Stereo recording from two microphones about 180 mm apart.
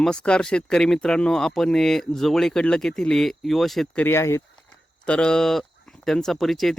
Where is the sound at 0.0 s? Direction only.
5° left (ahead or behind).